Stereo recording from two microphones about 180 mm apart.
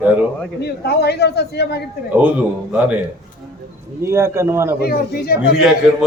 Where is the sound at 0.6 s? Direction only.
65° left (ahead or behind).